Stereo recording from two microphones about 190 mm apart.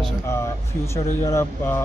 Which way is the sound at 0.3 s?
15° left (ahead or behind).